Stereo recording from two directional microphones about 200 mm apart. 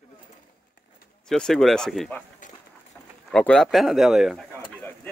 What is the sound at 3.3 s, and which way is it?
Speech, 5° left (ahead or behind).